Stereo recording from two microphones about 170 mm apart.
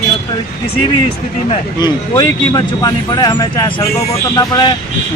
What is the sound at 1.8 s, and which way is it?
Speech, 25° left (ahead or behind).